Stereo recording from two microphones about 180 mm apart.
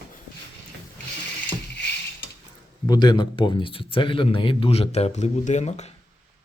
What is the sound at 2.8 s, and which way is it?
Speech, 25° left (ahead or behind).